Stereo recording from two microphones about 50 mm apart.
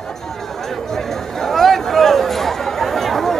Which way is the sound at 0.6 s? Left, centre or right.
Centre.